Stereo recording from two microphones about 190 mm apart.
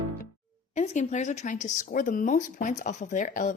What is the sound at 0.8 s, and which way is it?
Speech, 40° left (ahead or behind).